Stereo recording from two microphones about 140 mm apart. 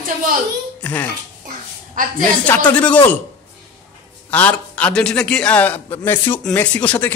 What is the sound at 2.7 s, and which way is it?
Speech, 10° left (ahead or behind).